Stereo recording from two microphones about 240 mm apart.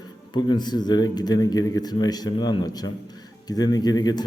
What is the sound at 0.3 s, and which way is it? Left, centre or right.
Speech, centre.